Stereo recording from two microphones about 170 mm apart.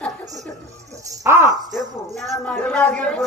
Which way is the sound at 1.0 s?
20° right (ahead or behind).